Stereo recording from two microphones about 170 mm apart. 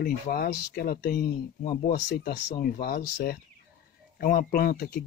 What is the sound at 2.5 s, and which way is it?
Speech, 60° left (ahead or behind).